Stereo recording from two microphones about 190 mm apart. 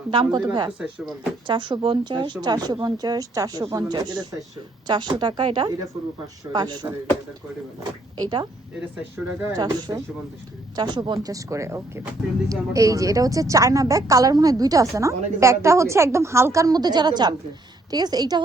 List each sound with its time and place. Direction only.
0.1 s speech: 25° right (ahead or behind)
0.8 s speech: 5° right (ahead or behind)
1.5 s speech: 25° right (ahead or behind)
8.2 s a woman's voice: 25° right (ahead or behind)